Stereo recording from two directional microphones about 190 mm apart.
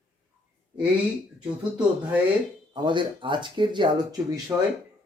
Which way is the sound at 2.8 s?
25° right (ahead or behind).